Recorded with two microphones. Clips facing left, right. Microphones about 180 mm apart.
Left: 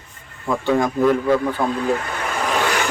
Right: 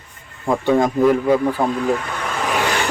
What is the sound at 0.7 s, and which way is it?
Speech, 20° right (ahead or behind).